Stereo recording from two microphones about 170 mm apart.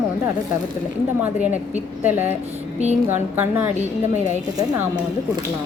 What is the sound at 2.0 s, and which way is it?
Speech, 10° right (ahead or behind).